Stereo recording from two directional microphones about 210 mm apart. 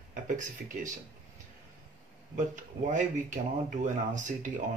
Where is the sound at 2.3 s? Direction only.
35° right (ahead or behind).